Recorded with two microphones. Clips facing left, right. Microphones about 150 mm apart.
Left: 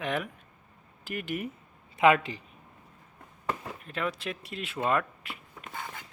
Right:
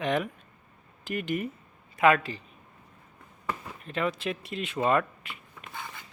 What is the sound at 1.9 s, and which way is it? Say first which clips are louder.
Speech: even; 20° left (ahead or behind).